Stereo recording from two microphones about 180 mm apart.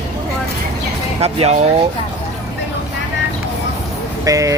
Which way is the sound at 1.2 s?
35° right (ahead or behind).